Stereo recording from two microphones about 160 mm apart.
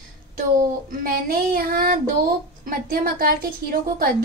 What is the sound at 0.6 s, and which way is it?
A woman's voice, 65° right (ahead or behind).